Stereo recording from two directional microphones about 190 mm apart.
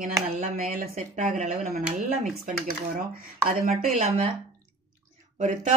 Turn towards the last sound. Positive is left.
turn(degrees=-40)  # may be behind; listen again after turning